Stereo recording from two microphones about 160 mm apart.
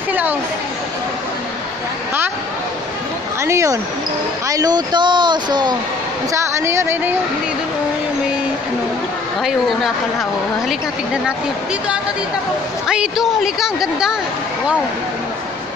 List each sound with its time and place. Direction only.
0.1 s speech: 10° right (ahead or behind)
3.4 s speech: 20° right (ahead or behind)
6.3 s a woman's voice: 15° right (ahead or behind)
12.8 s a woman's voice: 5° right (ahead or behind)